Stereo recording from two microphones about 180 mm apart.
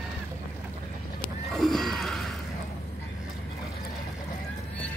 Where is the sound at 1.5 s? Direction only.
Centre (ahead or behind).